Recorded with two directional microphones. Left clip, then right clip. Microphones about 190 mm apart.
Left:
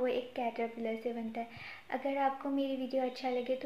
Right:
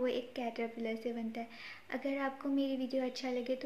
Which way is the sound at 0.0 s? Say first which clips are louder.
Left 2 dB; 20° right (ahead or behind).